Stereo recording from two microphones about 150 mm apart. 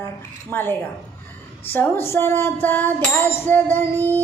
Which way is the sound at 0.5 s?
15° left (ahead or behind).